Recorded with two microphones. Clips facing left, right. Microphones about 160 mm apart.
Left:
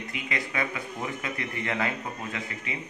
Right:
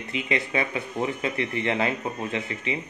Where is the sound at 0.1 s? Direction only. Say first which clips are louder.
Right 8 dB; 25° right (ahead or behind).